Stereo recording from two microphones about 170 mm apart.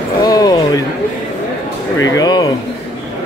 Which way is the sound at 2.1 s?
25° left (ahead or behind).